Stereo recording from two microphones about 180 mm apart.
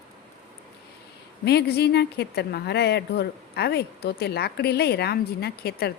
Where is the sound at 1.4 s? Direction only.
65° left (ahead or behind).